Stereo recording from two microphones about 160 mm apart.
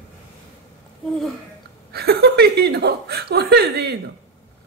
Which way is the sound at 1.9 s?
85° right.